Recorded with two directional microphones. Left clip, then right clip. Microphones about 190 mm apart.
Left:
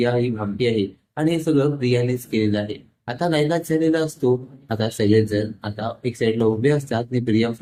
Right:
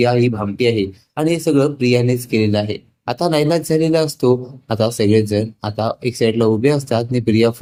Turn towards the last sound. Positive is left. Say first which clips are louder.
# right 6 dB
turn(degrees=-25)  # may be behind; listen again after turning